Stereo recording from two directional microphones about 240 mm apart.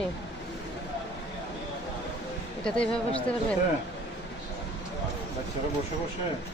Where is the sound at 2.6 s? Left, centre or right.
Centre.